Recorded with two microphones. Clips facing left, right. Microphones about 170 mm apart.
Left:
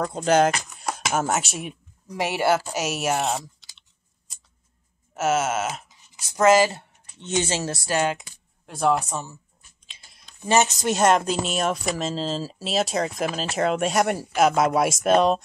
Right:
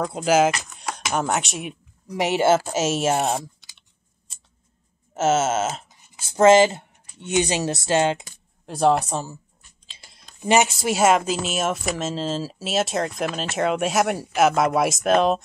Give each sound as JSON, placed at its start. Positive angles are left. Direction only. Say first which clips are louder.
{"t": 0.0, "sound": "speech", "louder": "right 1 dB", "side_deg": -5}
{"t": 2.1, "sound": "wail", "louder": "right 3 dB", "side_deg": -20}
{"t": 3.2, "sound": "typing", "louder": "right 2 dB", "side_deg": -45}
{"t": 5.1, "sound": "wail", "louder": "right 3 dB", "side_deg": -25}
{"t": 6.1, "sound": "speech", "louder": "right 3 dB", "side_deg": -25}
{"t": 10.4, "sound": "speech", "louder": "right 1 dB", "side_deg": -15}